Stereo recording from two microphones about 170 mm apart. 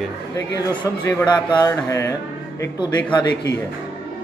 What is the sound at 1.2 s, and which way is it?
Speech, 25° left (ahead or behind).